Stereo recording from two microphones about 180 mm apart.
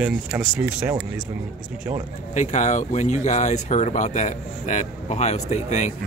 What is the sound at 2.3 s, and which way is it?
Speech, 40° left (ahead or behind).